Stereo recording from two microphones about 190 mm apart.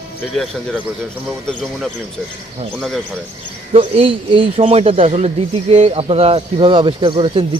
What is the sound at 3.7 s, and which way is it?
A man's voice, 30° right (ahead or behind).